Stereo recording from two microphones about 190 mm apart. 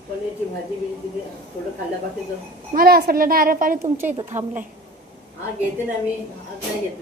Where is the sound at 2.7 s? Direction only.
50° right (ahead or behind).